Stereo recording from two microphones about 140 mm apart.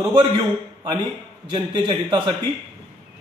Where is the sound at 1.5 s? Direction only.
35° right (ahead or behind).